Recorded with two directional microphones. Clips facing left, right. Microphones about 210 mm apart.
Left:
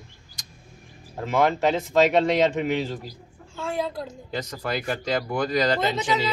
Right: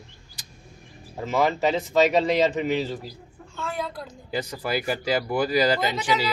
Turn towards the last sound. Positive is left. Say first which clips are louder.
# even
turn(degrees=25)  # may be behind; listen again after turning